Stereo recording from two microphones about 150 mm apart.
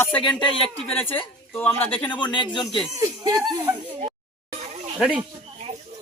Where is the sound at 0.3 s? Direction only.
35° left (ahead or behind).